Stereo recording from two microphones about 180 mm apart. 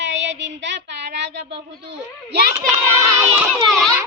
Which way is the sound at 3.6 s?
Centre (ahead or behind).